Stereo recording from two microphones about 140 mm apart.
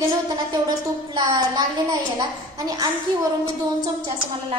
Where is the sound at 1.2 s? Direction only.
30° right (ahead or behind).